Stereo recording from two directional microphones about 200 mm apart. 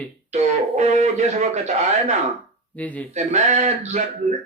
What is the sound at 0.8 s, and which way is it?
Speech, 35° right (ahead or behind).